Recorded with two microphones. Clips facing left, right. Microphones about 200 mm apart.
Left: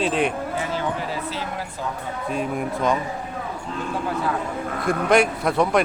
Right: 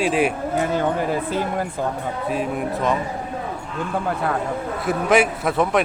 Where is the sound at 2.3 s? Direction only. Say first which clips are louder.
Right 1 dB; centre (ahead or behind).